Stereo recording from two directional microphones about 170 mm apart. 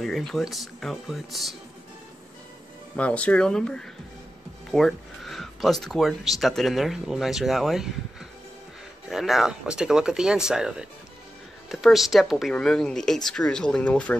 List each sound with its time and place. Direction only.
0.0 s speech: centre (ahead or behind)
3.0 s speech: 5° left (ahead or behind)
9.1 s speech: centre (ahead or behind)